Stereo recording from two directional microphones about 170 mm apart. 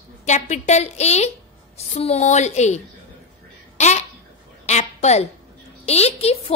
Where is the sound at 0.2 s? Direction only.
45° left (ahead or behind).